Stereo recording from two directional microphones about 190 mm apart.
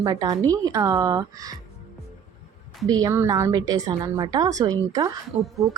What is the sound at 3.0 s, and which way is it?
Speech, 15° right (ahead or behind).